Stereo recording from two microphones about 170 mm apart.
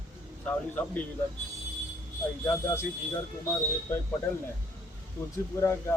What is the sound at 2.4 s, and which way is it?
Speech, 15° left (ahead or behind).